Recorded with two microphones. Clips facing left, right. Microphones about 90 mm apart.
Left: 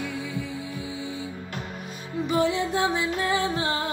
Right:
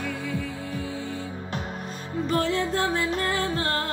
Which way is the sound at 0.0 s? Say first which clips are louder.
Right 1 dB; 15° left (ahead or behind).